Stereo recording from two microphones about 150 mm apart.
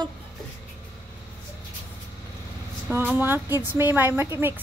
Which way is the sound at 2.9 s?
15° right (ahead or behind).